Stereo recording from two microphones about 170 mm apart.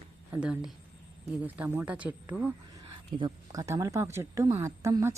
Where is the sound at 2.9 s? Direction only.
30° right (ahead or behind).